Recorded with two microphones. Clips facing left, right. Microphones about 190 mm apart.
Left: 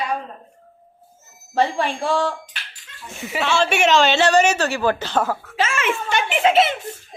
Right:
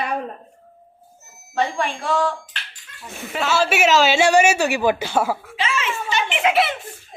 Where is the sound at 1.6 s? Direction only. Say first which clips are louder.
Left 2 dB; 30° left (ahead or behind).